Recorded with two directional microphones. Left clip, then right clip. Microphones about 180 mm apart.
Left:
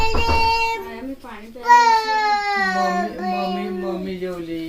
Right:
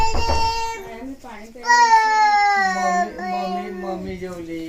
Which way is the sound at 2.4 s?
10° left (ahead or behind).